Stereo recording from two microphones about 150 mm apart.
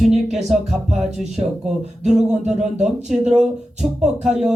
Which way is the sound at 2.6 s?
50° right (ahead or behind).